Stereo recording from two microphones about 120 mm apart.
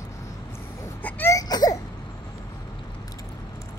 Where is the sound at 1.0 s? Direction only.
15° left (ahead or behind).